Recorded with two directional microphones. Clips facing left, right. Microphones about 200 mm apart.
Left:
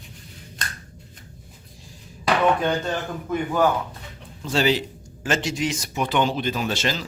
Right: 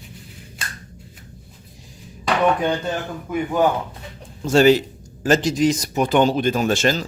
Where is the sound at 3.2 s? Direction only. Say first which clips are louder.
Right 2 dB; 15° right (ahead or behind).